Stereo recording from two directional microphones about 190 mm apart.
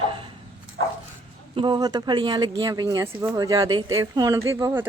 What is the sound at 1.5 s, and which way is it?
A woman's voice, 25° right (ahead or behind).